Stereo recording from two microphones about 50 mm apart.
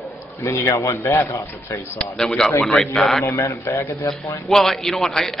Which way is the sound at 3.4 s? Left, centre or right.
Left.